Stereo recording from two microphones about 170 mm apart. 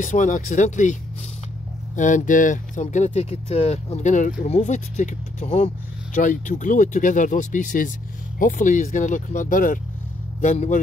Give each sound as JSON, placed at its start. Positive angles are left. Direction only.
{"t": 0.0, "sound": "speech", "side_deg": 50}
{"t": 2.0, "sound": "speech", "side_deg": 45}